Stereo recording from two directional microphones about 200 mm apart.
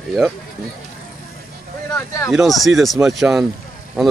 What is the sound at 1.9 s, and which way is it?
Speech, 15° left (ahead or behind).